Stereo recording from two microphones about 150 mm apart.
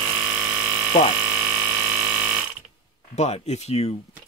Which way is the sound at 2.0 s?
10° right (ahead or behind).